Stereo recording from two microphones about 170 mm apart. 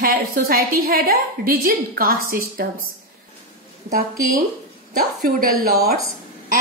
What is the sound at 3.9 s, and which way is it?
A woman's voice, 55° right (ahead or behind).